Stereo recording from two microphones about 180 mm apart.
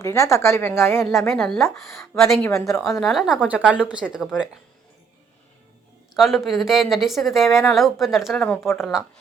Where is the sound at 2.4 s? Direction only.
15° left (ahead or behind).